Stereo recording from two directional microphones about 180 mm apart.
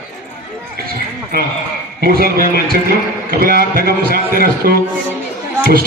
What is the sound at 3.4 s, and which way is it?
A man's voice, 55° right (ahead or behind).